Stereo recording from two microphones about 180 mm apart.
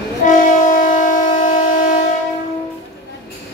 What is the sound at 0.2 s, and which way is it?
Train, 45° left (ahead or behind).